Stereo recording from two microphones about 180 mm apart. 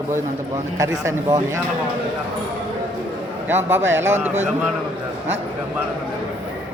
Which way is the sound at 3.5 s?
15° right (ahead or behind).